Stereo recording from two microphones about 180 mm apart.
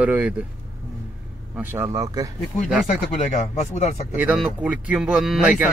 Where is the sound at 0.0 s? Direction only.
10° right (ahead or behind).